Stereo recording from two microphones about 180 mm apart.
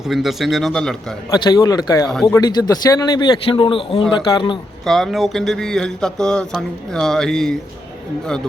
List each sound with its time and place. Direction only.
0.1 s speech: centre (ahead or behind)
1.5 s speech: 20° left (ahead or behind)
4.9 s speech: centre (ahead or behind)